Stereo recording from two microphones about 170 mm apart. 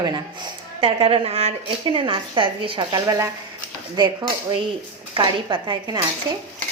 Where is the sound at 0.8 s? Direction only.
30° right (ahead or behind).